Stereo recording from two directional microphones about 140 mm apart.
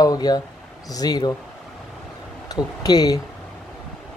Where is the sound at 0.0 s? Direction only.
25° left (ahead or behind).